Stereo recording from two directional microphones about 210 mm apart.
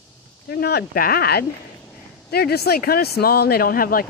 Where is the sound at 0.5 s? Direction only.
50° left (ahead or behind).